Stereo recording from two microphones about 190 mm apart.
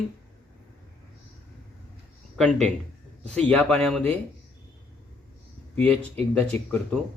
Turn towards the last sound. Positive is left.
turn(degrees=10)  # may be behind; listen again after turning